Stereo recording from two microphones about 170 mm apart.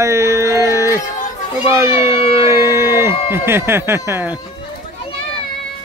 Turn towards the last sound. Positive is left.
turn(degrees=-15)  # may be behind; listen again after turning